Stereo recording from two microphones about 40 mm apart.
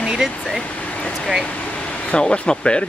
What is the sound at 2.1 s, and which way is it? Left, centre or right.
Speech, left.